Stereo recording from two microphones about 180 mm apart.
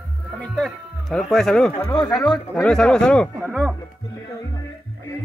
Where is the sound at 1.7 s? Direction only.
25° left (ahead or behind).